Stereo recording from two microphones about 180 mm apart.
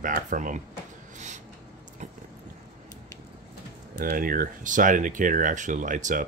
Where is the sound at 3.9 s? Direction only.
50° right (ahead or behind).